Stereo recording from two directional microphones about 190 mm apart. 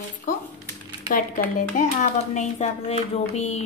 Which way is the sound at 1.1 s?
45° left (ahead or behind).